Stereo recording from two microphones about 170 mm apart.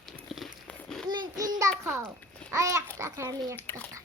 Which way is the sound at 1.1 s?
25° right (ahead or behind).